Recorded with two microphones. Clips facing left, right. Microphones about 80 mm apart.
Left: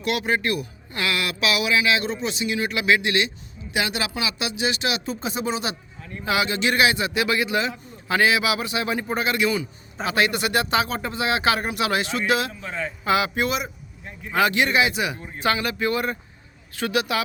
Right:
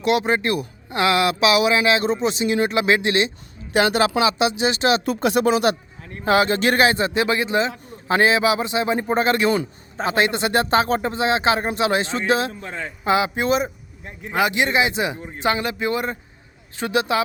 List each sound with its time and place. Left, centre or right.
0.0 s speech: right
3.7 s speech: right
4.2 s a man's voice: right
5.0 s speech: right
6.1 s a man's voice: right
10.1 s speech: right